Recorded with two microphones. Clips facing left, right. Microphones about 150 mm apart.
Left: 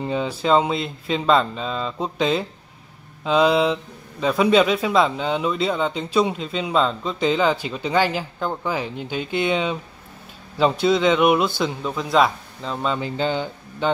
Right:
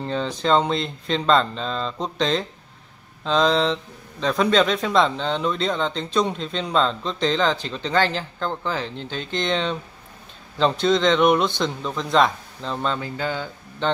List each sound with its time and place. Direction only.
0.0 s speech: 10° left (ahead or behind)
13.0 s speech: 20° left (ahead or behind)
13.8 s speech: 10° left (ahead or behind)